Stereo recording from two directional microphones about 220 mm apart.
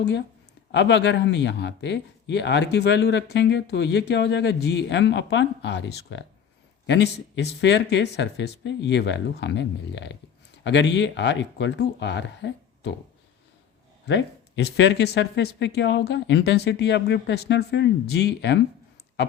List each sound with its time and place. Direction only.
0.0 s a man's voice: 55° left (ahead or behind)
14.1 s a man's voice: 55° left (ahead or behind)